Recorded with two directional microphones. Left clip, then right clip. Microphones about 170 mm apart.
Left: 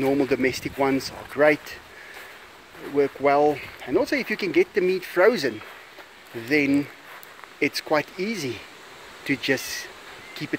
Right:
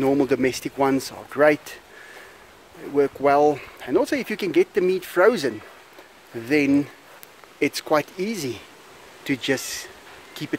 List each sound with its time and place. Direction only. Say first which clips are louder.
0.0 s speech: right 2 dB; 25° right (ahead or behind)
2.9 s speech: right 2 dB; 20° right (ahead or behind)
6.5 s speech: right 2 dB; 25° right (ahead or behind)